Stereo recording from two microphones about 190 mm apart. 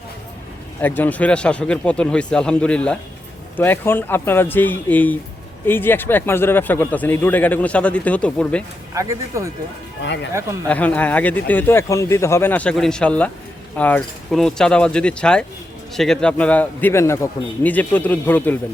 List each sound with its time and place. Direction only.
0.8 s a man's voice: 10° left (ahead or behind)
9.0 s speech: 15° right (ahead or behind)
10.7 s a man's voice: 10° left (ahead or behind)